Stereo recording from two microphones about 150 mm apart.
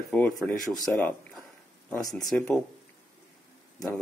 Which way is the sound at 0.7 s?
25° left (ahead or behind).